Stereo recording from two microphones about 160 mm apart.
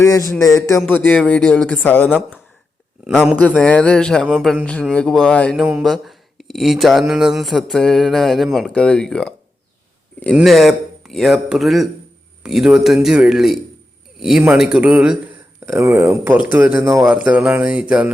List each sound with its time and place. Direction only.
0.0 s speech: 20° left (ahead or behind)
3.5 s speech: 5° left (ahead or behind)
10.3 s speech: centre (ahead or behind); by 17.1 s 20° right (ahead or behind)
17.1 s speech: 10° right (ahead or behind)